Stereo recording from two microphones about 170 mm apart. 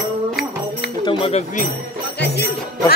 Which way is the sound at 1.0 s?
30° left (ahead or behind).